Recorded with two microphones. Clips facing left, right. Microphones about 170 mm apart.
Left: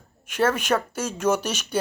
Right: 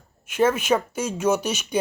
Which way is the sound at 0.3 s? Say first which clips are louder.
Right 2 dB; 10° right (ahead or behind).